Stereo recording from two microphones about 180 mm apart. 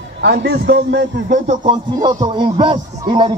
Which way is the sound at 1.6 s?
25° right (ahead or behind).